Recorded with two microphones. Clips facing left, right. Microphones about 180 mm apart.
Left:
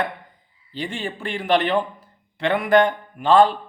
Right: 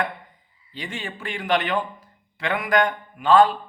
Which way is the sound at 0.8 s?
30° left (ahead or behind).